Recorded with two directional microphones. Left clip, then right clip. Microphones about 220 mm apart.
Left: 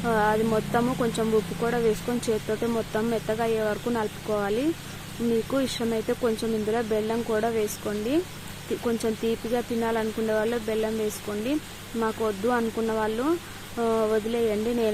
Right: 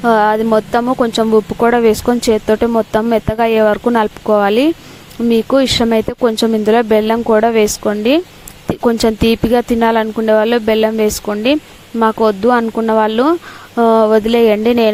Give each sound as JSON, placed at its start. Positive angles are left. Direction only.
{"t": 0.0, "sound": "speech", "side_deg": -40}